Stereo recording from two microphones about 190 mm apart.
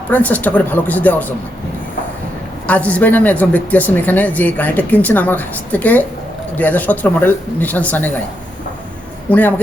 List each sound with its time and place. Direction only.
0.1 s speech: 10° left (ahead or behind)
2.6 s speech: 10° left (ahead or behind)
9.3 s speech: 10° left (ahead or behind)